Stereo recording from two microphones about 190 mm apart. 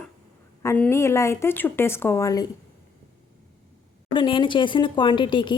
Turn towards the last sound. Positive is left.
turn(degrees=25)  # may be behind; listen again after turning